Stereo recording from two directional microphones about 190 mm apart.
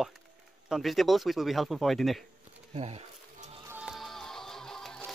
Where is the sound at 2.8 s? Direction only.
35° right (ahead or behind).